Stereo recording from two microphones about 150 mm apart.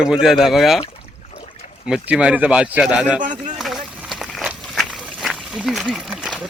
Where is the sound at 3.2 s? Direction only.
60° right (ahead or behind).